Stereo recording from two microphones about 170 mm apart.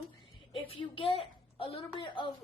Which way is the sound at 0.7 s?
30° left (ahead or behind).